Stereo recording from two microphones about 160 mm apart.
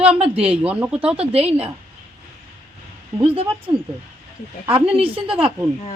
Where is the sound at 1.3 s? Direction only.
40° right (ahead or behind).